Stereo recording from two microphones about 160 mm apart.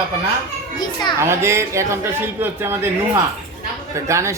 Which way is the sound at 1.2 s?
15° right (ahead or behind).